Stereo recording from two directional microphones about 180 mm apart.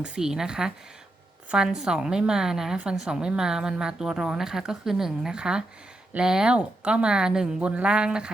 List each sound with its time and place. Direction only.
0.0 s a woman's voice: 5° right (ahead or behind)